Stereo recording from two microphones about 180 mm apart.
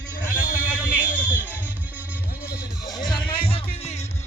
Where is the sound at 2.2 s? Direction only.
55° left (ahead or behind).